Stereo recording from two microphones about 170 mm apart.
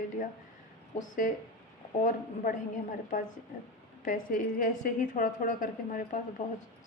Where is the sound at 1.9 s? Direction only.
50° left (ahead or behind).